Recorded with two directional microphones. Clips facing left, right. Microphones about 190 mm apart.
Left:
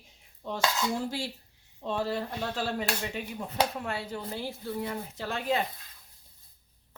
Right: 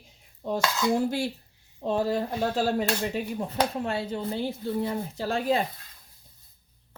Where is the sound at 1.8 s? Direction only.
40° right (ahead or behind).